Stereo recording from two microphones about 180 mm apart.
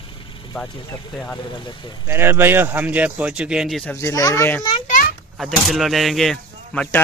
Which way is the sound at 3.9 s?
15° left (ahead or behind).